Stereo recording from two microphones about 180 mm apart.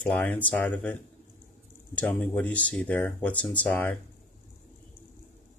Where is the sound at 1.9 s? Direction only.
10° left (ahead or behind).